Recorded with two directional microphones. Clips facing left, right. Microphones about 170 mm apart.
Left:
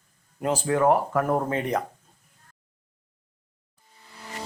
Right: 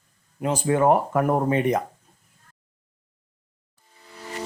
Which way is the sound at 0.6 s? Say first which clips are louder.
Right 2 dB; 20° right (ahead or behind).